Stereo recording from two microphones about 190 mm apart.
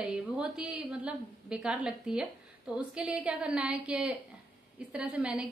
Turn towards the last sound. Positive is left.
turn(degrees=-5)  # may be behind; listen again after turning